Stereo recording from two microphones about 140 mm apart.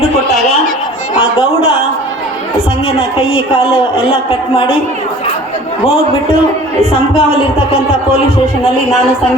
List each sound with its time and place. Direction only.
2.8 s a man's voice: 40° left (ahead or behind)
7.1 s speech: 45° left (ahead or behind)